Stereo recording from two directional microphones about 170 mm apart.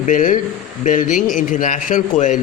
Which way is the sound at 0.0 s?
50° left (ahead or behind).